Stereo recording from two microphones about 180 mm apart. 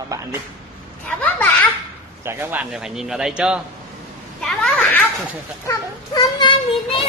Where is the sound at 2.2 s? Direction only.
10° right (ahead or behind).